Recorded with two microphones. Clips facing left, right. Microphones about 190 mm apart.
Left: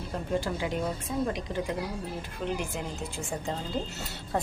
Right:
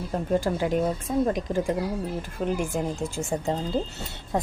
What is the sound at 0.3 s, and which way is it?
Speech, 45° right (ahead or behind).